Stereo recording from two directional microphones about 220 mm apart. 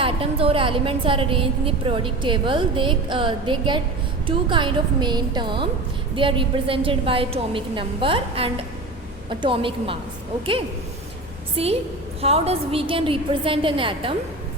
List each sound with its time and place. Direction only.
0.0 s a woman's voice: 25° right (ahead or behind)
11.5 s a woman's voice: 25° right (ahead or behind)